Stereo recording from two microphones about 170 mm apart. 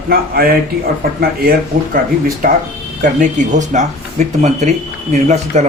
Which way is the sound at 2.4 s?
55° right (ahead or behind).